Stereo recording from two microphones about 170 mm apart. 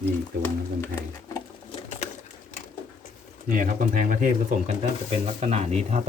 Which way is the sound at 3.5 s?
55° right (ahead or behind).